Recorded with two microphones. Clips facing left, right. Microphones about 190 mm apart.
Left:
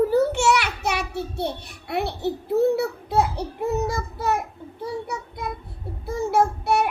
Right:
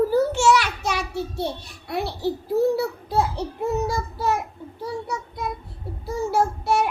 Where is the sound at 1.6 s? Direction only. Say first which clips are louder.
Left 1 dB; 60° left (ahead or behind).